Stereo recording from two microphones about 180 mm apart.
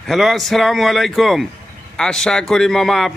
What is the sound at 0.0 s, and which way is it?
Speech, centre (ahead or behind).